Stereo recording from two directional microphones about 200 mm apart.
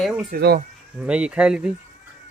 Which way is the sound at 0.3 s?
50° right (ahead or behind).